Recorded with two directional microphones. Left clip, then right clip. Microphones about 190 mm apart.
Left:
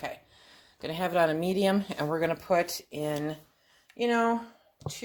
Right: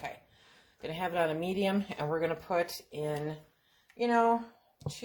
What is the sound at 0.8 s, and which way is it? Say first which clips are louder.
Speech: left 5 dB; 50° left (ahead or behind).